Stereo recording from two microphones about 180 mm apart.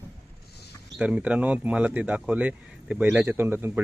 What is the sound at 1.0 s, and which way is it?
Speech, 5° right (ahead or behind).